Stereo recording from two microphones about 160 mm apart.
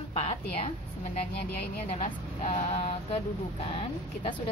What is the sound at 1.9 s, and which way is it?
Speech, 50° left (ahead or behind).